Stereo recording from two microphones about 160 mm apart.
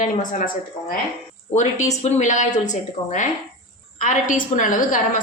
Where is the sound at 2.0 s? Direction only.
50° left (ahead or behind).